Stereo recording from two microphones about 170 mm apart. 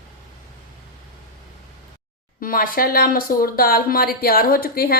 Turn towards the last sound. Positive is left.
turn(degrees=60)  # may be behind; listen again after turning